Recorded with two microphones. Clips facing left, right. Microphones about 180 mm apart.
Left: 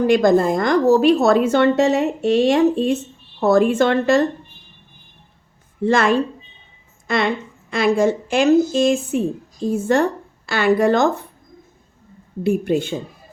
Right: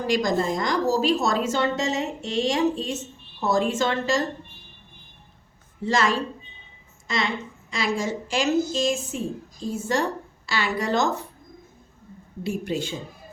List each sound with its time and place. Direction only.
0.1 s a woman's voice: 60° left (ahead or behind)
5.8 s a woman's voice: 55° left (ahead or behind)
12.4 s a woman's voice: 55° left (ahead or behind)